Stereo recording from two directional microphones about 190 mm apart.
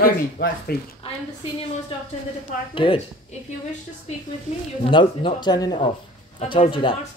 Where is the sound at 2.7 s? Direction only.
25° left (ahead or behind).